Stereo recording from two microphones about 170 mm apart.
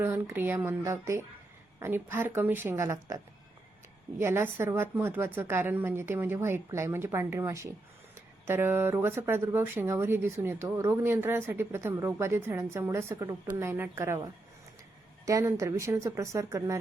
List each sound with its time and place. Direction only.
0.0 s speech: 15° right (ahead or behind)
4.2 s speech: 15° right (ahead or behind)
15.3 s speech: 15° right (ahead or behind)